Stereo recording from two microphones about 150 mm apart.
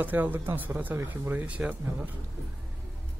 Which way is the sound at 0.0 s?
15° right (ahead or behind).